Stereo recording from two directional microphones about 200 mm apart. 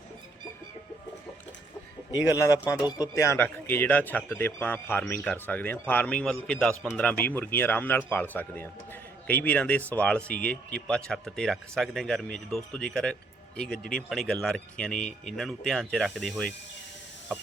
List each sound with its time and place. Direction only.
2.4 s speech: 15° left (ahead or behind); by 16.5 s centre (ahead or behind)